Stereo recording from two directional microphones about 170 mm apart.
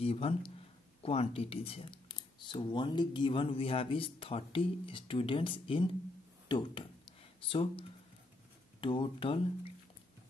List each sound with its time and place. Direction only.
0.0 s speech: 35° left (ahead or behind)
6.5 s a sound: 30° left (ahead or behind)
8.8 s speech: 30° left (ahead or behind)